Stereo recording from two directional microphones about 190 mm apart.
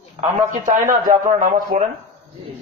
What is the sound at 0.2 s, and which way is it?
A man's voice, 35° right (ahead or behind).